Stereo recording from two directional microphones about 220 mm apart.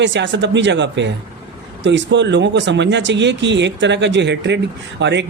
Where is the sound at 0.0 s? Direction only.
55° right (ahead or behind).